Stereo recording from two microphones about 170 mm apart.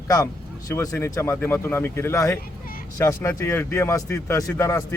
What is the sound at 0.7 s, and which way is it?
A man's voice, 15° left (ahead or behind).